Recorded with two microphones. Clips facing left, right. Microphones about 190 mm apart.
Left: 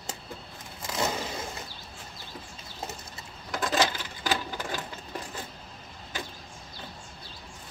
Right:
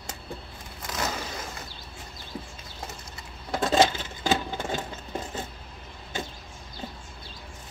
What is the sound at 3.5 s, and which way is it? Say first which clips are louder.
Sewing machine: right 5 dB; 25° right (ahead or behind).